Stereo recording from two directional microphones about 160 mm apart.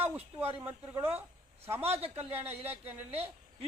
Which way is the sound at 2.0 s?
40° right (ahead or behind).